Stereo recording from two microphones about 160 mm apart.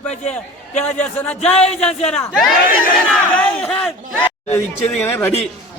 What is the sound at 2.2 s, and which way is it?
Speech, centre (ahead or behind).